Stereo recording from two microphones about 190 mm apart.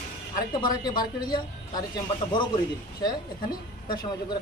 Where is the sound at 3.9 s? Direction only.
25° left (ahead or behind).